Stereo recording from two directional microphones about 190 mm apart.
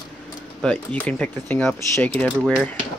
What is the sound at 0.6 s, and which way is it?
Speech, 5° left (ahead or behind).